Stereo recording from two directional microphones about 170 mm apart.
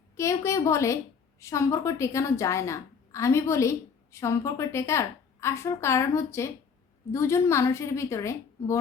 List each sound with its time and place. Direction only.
0.2 s a woman's voice: 15° left (ahead or behind)